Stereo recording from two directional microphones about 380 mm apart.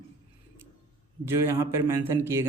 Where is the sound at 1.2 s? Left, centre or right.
Centre.